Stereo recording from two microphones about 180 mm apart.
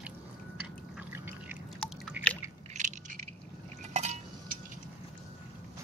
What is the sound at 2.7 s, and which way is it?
Coin, 45° right (ahead or behind).